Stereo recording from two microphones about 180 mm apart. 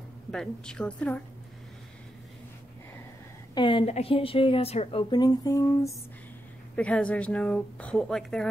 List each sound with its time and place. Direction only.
0.3 s speech: 5° left (ahead or behind)
3.5 s a woman's voice: 30° left (ahead or behind)
6.7 s speech: 5° left (ahead or behind)